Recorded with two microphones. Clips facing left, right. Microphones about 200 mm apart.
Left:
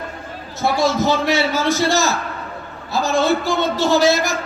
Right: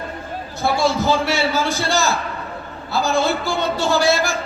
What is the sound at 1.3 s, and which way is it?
A man's voice, 20° left (ahead or behind).